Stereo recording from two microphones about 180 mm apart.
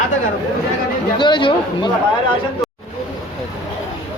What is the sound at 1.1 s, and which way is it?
Speech, 25° left (ahead or behind).